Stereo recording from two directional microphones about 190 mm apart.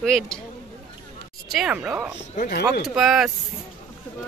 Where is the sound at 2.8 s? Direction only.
Centre (ahead or behind).